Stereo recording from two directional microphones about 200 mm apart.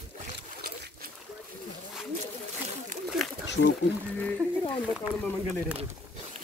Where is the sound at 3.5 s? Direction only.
60° left (ahead or behind).